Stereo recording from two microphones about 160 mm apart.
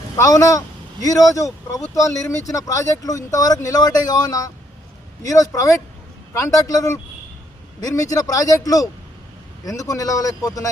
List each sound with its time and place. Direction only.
0.2 s speech: 20° left (ahead or behind)